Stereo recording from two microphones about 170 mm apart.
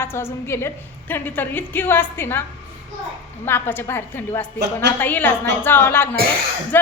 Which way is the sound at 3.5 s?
10° left (ahead or behind).